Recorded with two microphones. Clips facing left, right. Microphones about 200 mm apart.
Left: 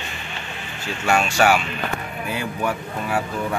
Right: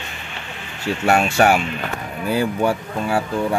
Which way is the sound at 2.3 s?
30° right (ahead or behind).